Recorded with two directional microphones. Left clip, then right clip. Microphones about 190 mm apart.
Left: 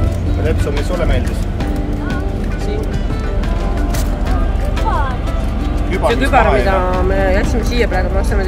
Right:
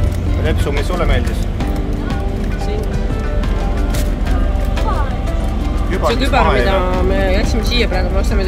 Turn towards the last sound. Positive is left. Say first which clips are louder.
# even
turn(degrees=-40)  # may be behind; listen again after turning